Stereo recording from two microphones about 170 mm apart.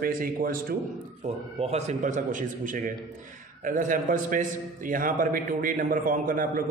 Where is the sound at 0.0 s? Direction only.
60° right (ahead or behind).